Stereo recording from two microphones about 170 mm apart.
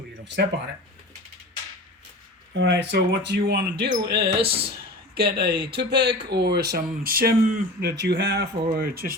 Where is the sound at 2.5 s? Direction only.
90° right; by 7.9 s 60° right (ahead or behind).